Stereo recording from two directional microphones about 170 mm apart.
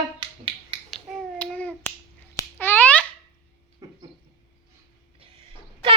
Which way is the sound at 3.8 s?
20° right (ahead or behind).